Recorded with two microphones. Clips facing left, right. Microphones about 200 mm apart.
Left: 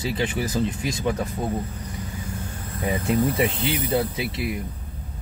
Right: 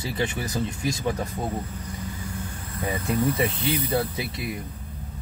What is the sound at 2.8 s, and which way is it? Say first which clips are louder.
Speech: left 2 dB; 20° left (ahead or behind).